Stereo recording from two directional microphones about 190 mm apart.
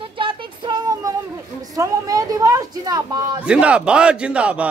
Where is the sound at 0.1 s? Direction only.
25° right (ahead or behind).